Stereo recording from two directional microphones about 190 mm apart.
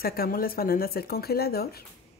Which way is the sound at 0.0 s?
50° left (ahead or behind).